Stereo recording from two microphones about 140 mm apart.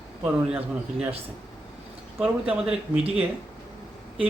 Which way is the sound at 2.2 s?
10° right (ahead or behind).